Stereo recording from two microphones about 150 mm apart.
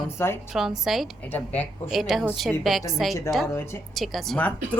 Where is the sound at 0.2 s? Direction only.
15° left (ahead or behind).